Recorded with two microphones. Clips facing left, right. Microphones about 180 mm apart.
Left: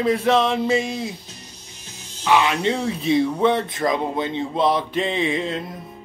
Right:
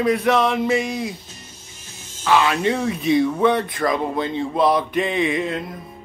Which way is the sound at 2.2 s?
20° left (ahead or behind).